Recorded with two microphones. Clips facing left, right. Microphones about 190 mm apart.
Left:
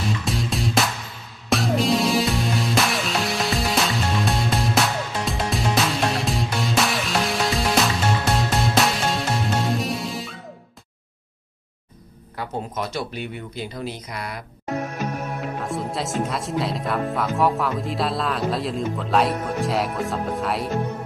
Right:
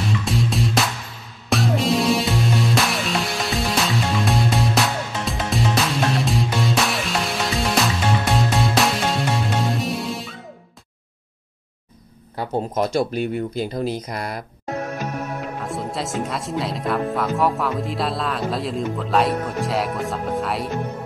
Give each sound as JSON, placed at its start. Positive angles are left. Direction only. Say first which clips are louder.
{"t": 0.0, "sound": "music", "louder": "right 3 dB", "side_deg": 0}
{"t": 12.7, "sound": "speech", "louder": "right 11 dB", "side_deg": -45}
{"t": 15.4, "sound": "speech", "louder": "even", "side_deg": 0}